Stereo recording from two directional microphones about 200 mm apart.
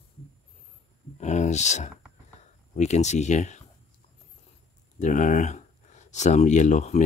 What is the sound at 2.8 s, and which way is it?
Speech, 35° left (ahead or behind).